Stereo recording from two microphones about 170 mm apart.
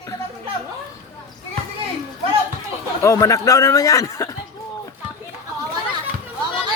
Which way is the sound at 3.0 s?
20° left (ahead or behind).